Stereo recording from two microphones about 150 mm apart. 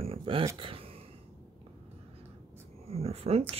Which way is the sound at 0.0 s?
40° right (ahead or behind).